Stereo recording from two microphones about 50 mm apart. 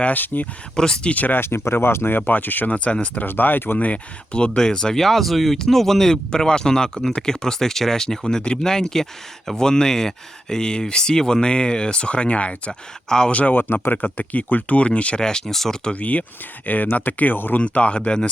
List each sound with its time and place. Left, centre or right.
0.0 s speech: left
0.8 s speech: centre
1.1 s speech: left
1.4 s speech: left
2.1 s speech: left
2.7 s speech: left
3.2 s speech: left
13.1 s speech: centre
13.3 s speech: left; by 15.8 s centre
15.8 s speech: left
17.6 s speech: left